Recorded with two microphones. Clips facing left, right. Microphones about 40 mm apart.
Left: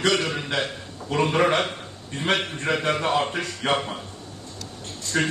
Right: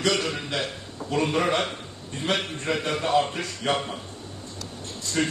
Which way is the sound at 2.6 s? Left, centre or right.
Left.